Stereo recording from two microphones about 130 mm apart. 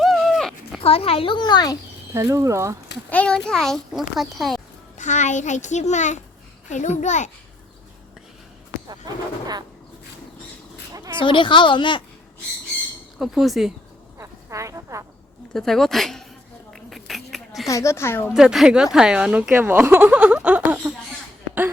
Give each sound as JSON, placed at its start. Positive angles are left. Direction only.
{"t": 0.0, "sound": "dog", "side_deg": 0}
{"t": 0.8, "sound": "speech", "side_deg": 45}
{"t": 2.1, "sound": "speech", "side_deg": -25}
{"t": 3.1, "sound": "a child's voice", "side_deg": 10}
{"t": 4.9, "sound": "a child's voice", "side_deg": 70}
{"t": 11.1, "sound": "speech", "side_deg": 40}
{"t": 13.1, "sound": "a child's voice", "side_deg": 0}
{"t": 14.2, "sound": "a sound", "side_deg": -25}
{"t": 15.5, "sound": "a child's voice", "side_deg": 0}
{"t": 16.7, "sound": "a sound", "side_deg": 0}
{"t": 17.7, "sound": "speech", "side_deg": 25}
{"t": 18.3, "sound": "a woman's voice", "side_deg": -5}